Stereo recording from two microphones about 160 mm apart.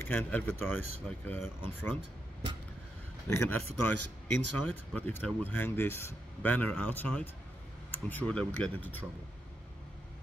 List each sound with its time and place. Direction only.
0.0 s speech: 10° left (ahead or behind)
3.3 s speech: 15° left (ahead or behind)